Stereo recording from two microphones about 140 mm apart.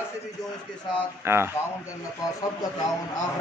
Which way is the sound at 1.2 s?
15° right (ahead or behind).